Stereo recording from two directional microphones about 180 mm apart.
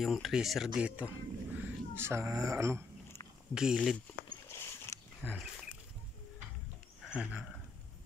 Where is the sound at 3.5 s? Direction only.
5° right (ahead or behind).